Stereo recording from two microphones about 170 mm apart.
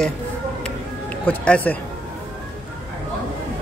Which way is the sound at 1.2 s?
10° left (ahead or behind).